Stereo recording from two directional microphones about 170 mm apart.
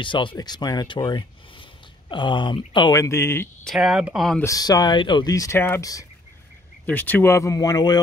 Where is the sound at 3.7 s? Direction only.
Centre (ahead or behind).